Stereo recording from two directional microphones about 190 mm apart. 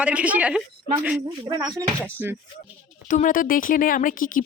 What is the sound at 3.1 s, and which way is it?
Speech, 45° left (ahead or behind).